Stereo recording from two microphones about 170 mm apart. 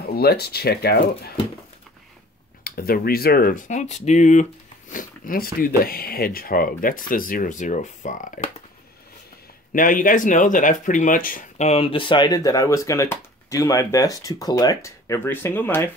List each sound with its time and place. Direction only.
0.1 s speech: 70° left (ahead or behind)
2.6 s speech: 65° left (ahead or behind); by 8.5 s 45° left (ahead or behind)
9.7 s speech: 50° left (ahead or behind); by 15.9 s 15° left (ahead or behind)